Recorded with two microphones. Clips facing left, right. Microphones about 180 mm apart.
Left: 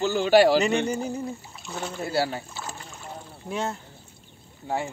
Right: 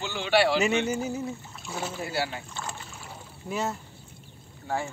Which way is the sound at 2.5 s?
5° left (ahead or behind).